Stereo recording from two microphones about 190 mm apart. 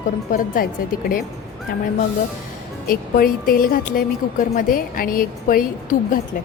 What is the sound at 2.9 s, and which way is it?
A woman's voice, 50° left (ahead or behind).